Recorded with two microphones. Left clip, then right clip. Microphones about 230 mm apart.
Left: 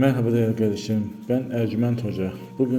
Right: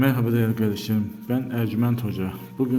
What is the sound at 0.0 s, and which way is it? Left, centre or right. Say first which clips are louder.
A man's voice: left 2 dB; centre.